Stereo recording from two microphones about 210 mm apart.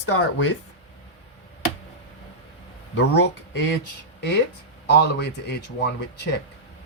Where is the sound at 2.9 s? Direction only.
55° left (ahead or behind).